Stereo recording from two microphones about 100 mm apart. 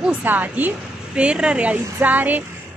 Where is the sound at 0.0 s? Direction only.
15° right (ahead or behind).